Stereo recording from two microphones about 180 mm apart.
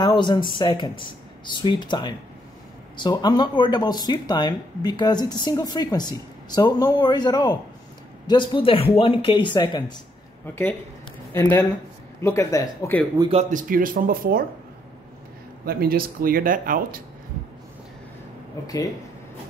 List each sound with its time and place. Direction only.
0.0 s speech: 25° left (ahead or behind)
10.4 s speech: 10° left (ahead or behind)
13.3 s speech: 40° right (ahead or behind)
15.6 s speech: 55° right (ahead or behind)